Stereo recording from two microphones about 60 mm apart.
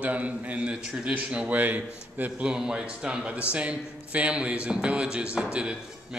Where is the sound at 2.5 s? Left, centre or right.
Centre.